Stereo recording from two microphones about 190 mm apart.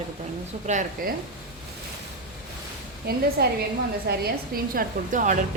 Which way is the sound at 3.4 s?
55° right (ahead or behind).